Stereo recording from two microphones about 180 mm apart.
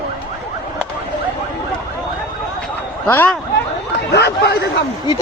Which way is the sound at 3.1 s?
10° left (ahead or behind).